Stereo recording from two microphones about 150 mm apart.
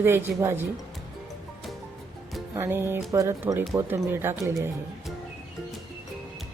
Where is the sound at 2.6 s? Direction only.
15° right (ahead or behind).